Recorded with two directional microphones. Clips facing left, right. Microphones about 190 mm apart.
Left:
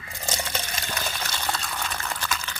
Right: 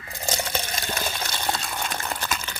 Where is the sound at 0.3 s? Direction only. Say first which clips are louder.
Right 3 dB; 25° right (ahead or behind).